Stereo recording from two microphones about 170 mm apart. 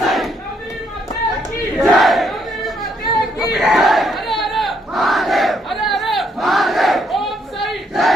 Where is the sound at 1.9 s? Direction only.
Centre (ahead or behind).